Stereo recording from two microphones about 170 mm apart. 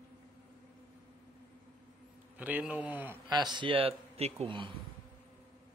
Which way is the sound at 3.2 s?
25° right (ahead or behind).